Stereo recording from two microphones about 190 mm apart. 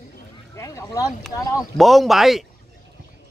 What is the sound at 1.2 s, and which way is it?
A man's voice, centre (ahead or behind).